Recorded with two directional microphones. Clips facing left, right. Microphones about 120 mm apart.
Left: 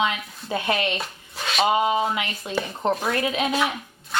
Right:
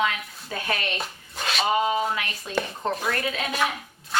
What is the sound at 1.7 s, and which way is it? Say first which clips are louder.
A woman's voice: left 1 dB; 20° left (ahead or behind).